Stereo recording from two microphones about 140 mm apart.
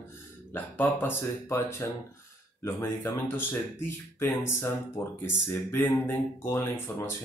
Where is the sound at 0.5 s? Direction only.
15° left (ahead or behind).